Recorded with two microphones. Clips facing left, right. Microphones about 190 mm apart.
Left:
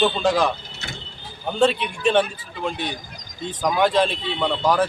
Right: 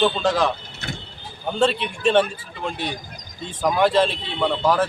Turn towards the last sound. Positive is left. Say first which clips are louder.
# even
turn(degrees=-5)  # may be behind; listen again after turning